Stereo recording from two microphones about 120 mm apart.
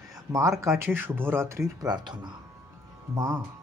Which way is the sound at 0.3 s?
25° right (ahead or behind).